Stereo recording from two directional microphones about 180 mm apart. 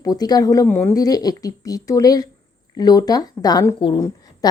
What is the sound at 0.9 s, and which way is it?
Speech, 20° left (ahead or behind).